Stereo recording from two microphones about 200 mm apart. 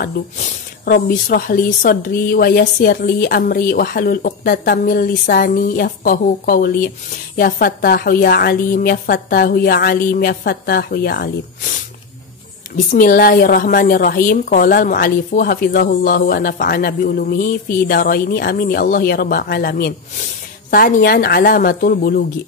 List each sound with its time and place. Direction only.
0.0 s a woman's voice: 45° left (ahead or behind)
12.9 s a woman's voice: 45° left (ahead or behind)